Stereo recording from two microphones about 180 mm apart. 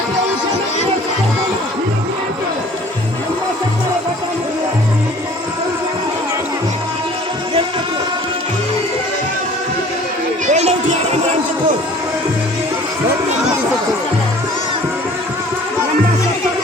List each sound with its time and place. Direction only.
10.4 s children playing: 40° right (ahead or behind)